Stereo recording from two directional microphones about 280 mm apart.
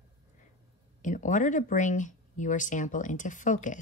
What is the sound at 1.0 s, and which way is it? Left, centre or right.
Speech, left.